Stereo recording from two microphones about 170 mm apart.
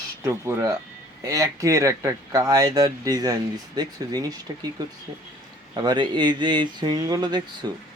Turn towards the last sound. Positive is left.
turn(degrees=-25)  # may be behind; listen again after turning